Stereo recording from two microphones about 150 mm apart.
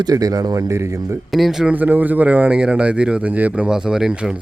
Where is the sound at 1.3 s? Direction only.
Centre (ahead or behind).